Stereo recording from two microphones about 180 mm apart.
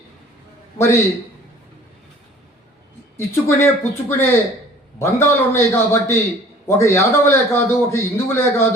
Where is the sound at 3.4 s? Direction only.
15° left (ahead or behind).